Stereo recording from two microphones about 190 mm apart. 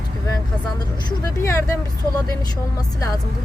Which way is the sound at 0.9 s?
20° left (ahead or behind).